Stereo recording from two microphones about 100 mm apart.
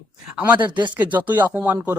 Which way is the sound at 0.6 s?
50° right (ahead or behind).